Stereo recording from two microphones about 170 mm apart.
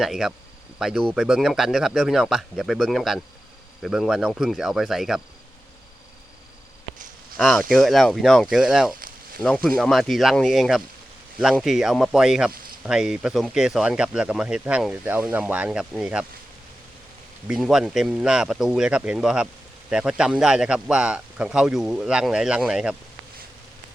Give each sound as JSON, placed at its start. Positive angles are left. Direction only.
{"t": 0.0, "sound": "speech", "side_deg": 0}
{"t": 7.3, "sound": "speech", "side_deg": 0}
{"t": 17.5, "sound": "speech", "side_deg": 0}